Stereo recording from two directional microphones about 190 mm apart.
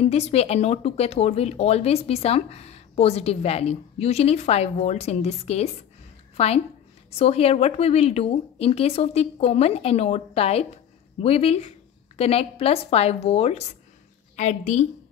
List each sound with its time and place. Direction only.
0.0 s a woman's voice: 35° left (ahead or behind)